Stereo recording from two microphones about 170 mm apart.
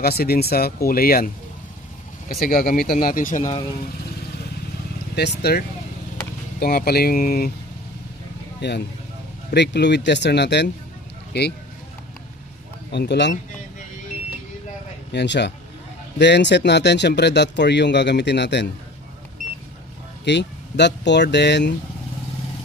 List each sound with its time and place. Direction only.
0.0 s speech: 65° left (ahead or behind)
2.4 s speech: 60° left (ahead or behind)
5.1 s speech: 70° left (ahead or behind)
8.5 s speech: 80° left
12.9 s speech: 80° left
15.1 s speech: 90° left
20.2 s speech: 90° left